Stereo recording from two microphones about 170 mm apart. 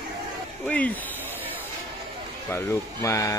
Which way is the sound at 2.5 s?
15° left (ahead or behind).